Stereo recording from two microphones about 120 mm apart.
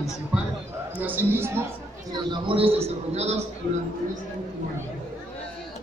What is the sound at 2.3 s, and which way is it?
A man's voice, 50° right (ahead or behind).